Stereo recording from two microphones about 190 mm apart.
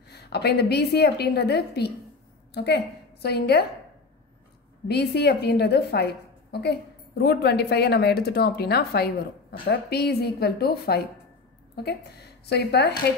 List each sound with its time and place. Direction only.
0.1 s a woman's voice: 60° left (ahead or behind)
4.8 s a woman's voice: 60° left (ahead or behind)